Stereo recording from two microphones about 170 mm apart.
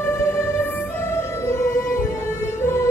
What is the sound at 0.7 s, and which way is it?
Music, 15° left (ahead or behind).